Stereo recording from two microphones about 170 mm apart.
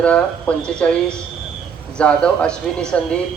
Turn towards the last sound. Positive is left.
turn(degrees=5)  # may be behind; listen again after turning